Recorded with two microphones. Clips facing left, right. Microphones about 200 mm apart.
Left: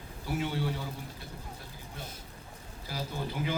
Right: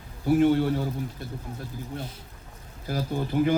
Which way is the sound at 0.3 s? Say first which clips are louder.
Right 12 dB; 50° right (ahead or behind).